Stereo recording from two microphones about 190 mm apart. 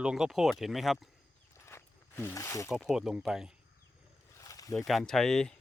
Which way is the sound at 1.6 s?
10° left (ahead or behind).